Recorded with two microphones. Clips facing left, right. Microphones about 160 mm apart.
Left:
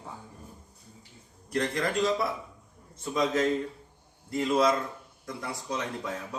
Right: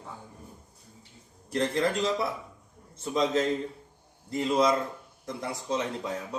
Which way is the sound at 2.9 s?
25° right (ahead or behind).